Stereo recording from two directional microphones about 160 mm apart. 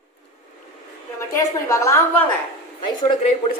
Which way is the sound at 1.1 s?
20° left (ahead or behind).